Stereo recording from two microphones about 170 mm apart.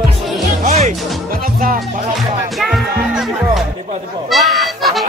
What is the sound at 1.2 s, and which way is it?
Music, 55° right (ahead or behind).